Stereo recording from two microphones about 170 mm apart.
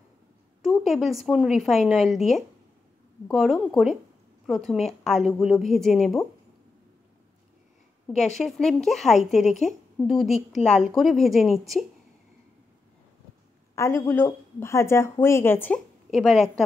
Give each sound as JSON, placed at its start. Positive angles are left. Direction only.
{"t": 0.6, "sound": "a sound", "side_deg": 0}
{"t": 1.2, "sound": "a woman's voice", "side_deg": 0}
{"t": 8.1, "sound": "a woman's voice", "side_deg": 45}
{"t": 8.5, "sound": "a woman's voice", "side_deg": 0}
{"t": 13.7, "sound": "a woman's voice", "side_deg": 15}
{"t": 16.1, "sound": "a woman's voice", "side_deg": 0}